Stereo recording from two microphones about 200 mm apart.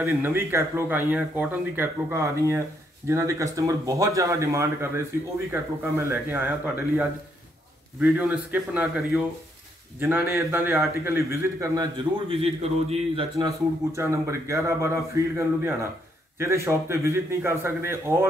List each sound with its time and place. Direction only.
0.0 s a man's voice: 10° right (ahead or behind)
13.9 s speech: 15° right (ahead or behind)